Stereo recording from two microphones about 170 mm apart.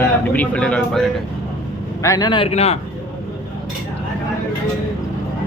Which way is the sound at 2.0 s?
20° left (ahead or behind).